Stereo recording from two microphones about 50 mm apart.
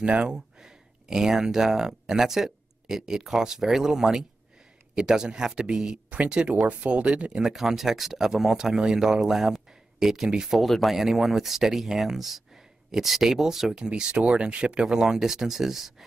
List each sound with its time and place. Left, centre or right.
0.0 s speech: right
7.4 s speech: centre
10.6 s speech: centre